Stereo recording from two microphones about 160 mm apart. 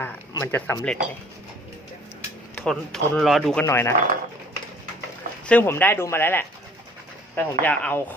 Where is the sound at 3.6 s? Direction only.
15° left (ahead or behind).